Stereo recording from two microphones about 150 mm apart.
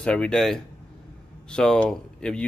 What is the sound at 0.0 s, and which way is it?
Speech, 5° left (ahead or behind).